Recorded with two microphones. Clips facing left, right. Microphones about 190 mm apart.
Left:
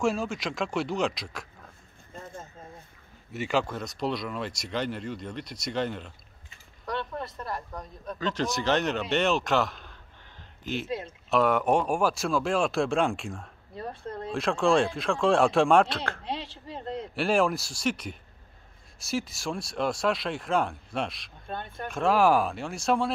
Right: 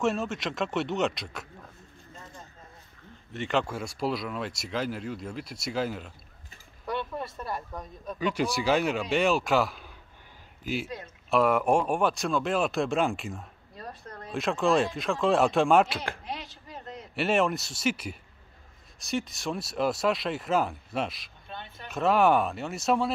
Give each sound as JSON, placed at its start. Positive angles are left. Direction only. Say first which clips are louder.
{"t": 0.0, "sound": "speech", "louder": "even", "side_deg": 0}
{"t": 3.3, "sound": "speech", "louder": "left 1 dB", "side_deg": 5}
{"t": 3.6, "sound": "speech", "louder": "even", "side_deg": -5}
{"t": 13.7, "sound": "a sound", "louder": "left 6 dB", "side_deg": 25}
{"t": 14.3, "sound": "speech", "louder": "left 1 dB", "side_deg": 0}
{"t": 16.3, "sound": "a sound", "louder": "left 4 dB", "side_deg": 30}
{"t": 17.1, "sound": "speech", "louder": "even", "side_deg": 0}
{"t": 21.5, "sound": "speech", "louder": "left 7 dB", "side_deg": 50}
{"t": 21.9, "sound": "speech", "louder": "even", "side_deg": 0}